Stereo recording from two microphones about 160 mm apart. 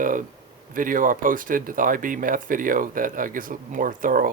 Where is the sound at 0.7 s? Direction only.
60° right (ahead or behind).